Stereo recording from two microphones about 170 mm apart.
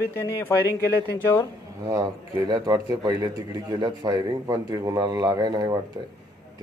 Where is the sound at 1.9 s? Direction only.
20° right (ahead or behind).